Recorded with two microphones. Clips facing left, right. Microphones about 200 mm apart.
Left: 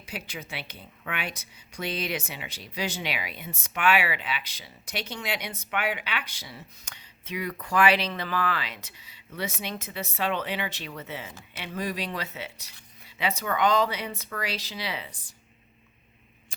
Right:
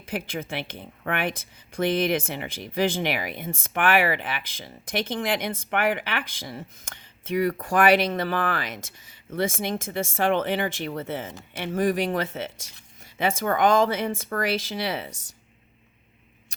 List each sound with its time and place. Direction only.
0.0 s a woman's voice: 55° right (ahead or behind)
15.1 s speech: 75° right (ahead or behind)